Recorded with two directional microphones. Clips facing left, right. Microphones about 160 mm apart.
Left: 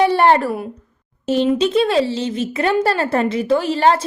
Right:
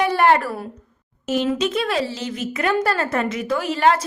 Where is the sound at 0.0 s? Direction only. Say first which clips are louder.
Left 3 dB; 30° left (ahead or behind).